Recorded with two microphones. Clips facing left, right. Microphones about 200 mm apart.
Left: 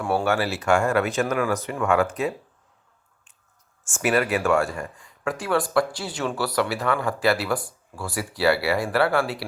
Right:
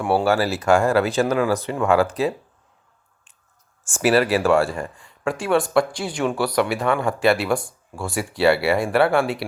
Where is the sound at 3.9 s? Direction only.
35° right (ahead or behind).